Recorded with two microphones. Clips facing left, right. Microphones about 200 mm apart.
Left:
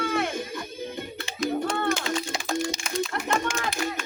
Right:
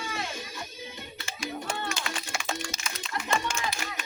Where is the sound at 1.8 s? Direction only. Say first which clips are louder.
Left 9 dB; 55° left (ahead or behind).